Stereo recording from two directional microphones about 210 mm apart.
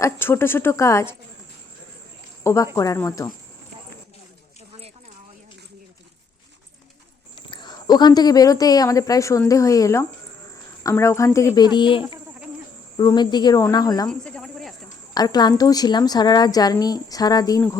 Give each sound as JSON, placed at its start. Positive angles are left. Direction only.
{"t": 0.0, "sound": "speech", "side_deg": 10}
{"t": 2.4, "sound": "speech", "side_deg": 15}
{"t": 7.5, "sound": "a woman's voice", "side_deg": 20}
{"t": 14.1, "sound": "cricket", "side_deg": 5}
{"t": 15.1, "sound": "a woman's voice", "side_deg": 20}